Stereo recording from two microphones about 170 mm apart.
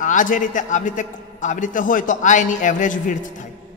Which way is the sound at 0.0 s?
50° left (ahead or behind).